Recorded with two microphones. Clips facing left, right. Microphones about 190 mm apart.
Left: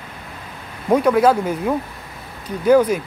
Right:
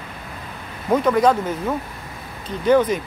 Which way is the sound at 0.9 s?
10° left (ahead or behind).